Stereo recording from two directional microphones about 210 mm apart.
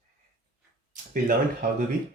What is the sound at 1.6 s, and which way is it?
Speech, 40° right (ahead or behind).